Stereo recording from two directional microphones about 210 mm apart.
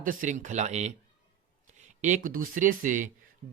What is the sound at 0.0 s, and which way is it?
Speech, 40° right (ahead or behind).